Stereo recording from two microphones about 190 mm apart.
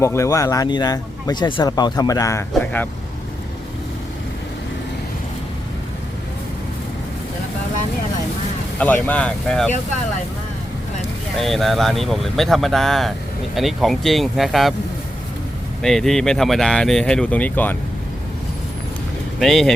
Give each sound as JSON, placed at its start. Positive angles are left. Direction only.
{"t": 0.0, "sound": "speech", "side_deg": 15}
{"t": 8.8, "sound": "speech", "side_deg": 10}
{"t": 11.3, "sound": "speech", "side_deg": 0}
{"t": 15.8, "sound": "speech", "side_deg": 0}
{"t": 19.4, "sound": "speech", "side_deg": 0}